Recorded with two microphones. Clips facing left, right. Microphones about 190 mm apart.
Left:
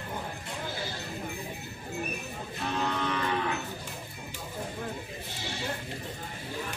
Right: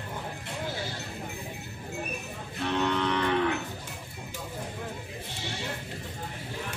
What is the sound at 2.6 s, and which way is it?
Music, 70° right (ahead or behind).